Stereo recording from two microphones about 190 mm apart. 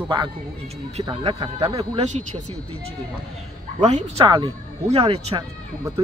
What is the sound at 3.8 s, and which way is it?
Speech, 40° right (ahead or behind).